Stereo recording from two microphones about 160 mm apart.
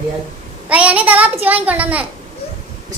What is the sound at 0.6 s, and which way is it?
A child's voice, 10° right (ahead or behind).